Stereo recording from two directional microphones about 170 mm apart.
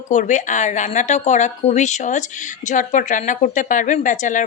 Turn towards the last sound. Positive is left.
turn(degrees=50)  # may be behind; listen again after turning